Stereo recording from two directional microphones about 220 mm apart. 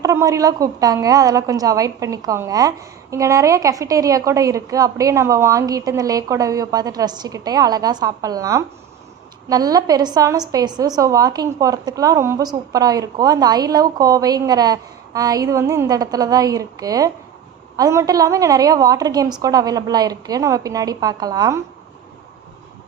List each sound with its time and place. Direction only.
0.0 s a woman's voice: 15° right (ahead or behind)